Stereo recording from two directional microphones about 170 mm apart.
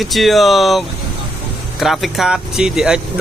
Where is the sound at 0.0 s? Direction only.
Centre (ahead or behind).